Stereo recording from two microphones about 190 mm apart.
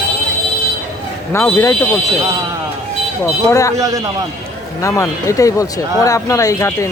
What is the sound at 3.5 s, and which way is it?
Speech, 15° left (ahead or behind).